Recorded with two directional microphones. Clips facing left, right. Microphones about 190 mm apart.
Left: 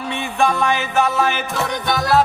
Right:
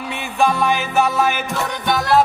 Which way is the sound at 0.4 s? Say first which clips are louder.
Right 1 dB; 10° right (ahead or behind).